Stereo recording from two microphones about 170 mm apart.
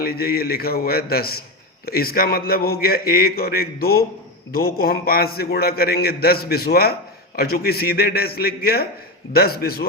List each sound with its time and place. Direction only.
0.0 s a man's voice: 65° left (ahead or behind)